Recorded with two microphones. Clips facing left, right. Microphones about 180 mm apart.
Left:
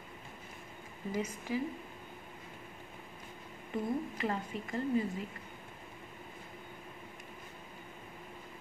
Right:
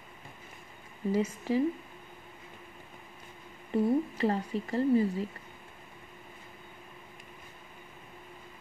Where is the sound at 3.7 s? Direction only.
35° right (ahead or behind).